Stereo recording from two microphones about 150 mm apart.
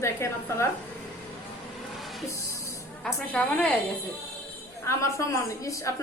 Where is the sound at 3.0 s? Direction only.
10° left (ahead or behind).